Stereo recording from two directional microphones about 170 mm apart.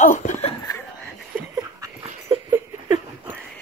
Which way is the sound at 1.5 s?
20° right (ahead or behind).